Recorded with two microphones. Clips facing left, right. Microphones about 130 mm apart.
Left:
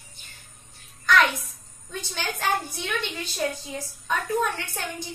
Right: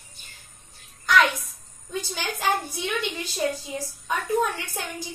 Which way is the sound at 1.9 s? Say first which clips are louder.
Right 2 dB; 10° right (ahead or behind).